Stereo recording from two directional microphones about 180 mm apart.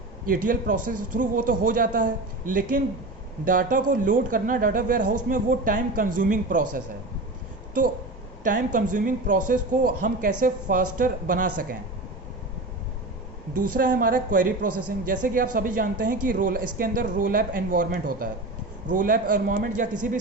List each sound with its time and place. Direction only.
0.3 s speech: 50° right (ahead or behind)
8.4 s speech: 45° right (ahead or behind)
13.5 s speech: 50° right (ahead or behind)